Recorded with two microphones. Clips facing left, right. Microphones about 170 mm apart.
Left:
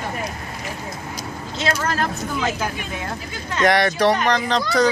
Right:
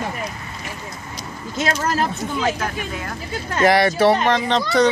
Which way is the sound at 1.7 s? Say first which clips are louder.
Right 1 dB; 35° right (ahead or behind).